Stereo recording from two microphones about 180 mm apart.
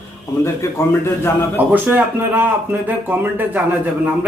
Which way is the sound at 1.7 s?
10° right (ahead or behind).